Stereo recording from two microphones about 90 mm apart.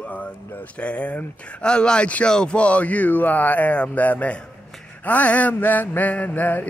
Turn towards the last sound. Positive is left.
turn(degrees=20)  # may be behind; listen again after turning